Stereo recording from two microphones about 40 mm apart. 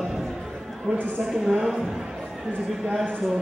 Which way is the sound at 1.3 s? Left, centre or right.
Centre.